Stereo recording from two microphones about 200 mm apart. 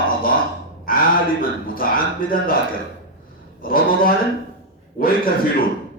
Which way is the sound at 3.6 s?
45° left (ahead or behind).